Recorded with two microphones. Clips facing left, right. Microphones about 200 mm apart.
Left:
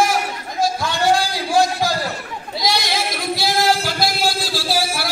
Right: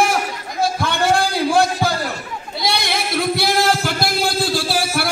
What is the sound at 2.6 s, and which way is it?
Singing, 55° right (ahead or behind).